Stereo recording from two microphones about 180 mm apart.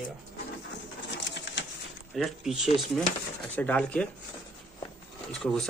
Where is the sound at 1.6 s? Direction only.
80° left.